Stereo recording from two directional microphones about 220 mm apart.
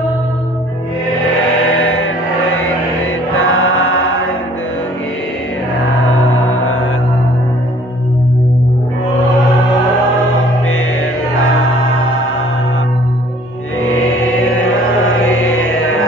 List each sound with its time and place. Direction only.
1.8 s music: 70° left (ahead or behind)
3.3 s chant: 65° left (ahead or behind)
6.3 s music: 70° left (ahead or behind)